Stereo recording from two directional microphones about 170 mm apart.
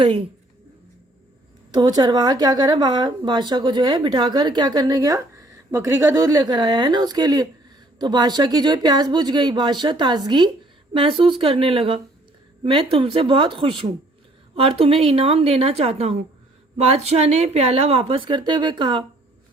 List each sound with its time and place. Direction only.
0.0 s speech: 30° right (ahead or behind)
1.7 s a woman's voice: 25° right (ahead or behind)